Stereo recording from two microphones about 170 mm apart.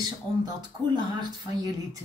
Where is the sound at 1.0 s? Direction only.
25° right (ahead or behind).